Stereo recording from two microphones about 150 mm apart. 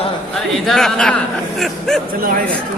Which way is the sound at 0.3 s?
Centre (ahead or behind).